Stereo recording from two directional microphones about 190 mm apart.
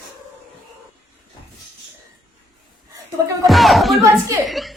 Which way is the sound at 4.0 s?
15° right (ahead or behind).